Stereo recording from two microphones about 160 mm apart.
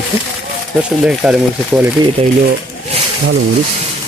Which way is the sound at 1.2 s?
5° right (ahead or behind).